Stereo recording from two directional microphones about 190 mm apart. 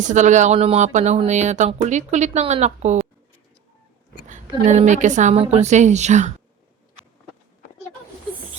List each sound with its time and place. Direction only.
0.0 s speech: 40° right (ahead or behind)
4.3 s speech: 40° right (ahead or behind)